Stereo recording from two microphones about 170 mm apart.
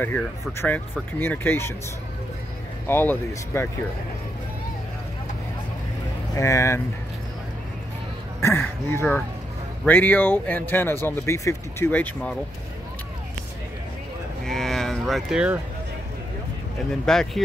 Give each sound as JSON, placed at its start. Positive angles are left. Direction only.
{"t": 0.0, "sound": "speech", "side_deg": 10}
{"t": 2.9, "sound": "speech", "side_deg": 15}
{"t": 6.3, "sound": "speech", "side_deg": 20}
{"t": 8.4, "sound": "speech", "side_deg": 15}
{"t": 14.4, "sound": "cattle", "side_deg": 0}
{"t": 17.0, "sound": "speech", "side_deg": 5}